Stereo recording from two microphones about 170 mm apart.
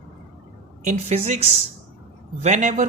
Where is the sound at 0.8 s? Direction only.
45° right (ahead or behind).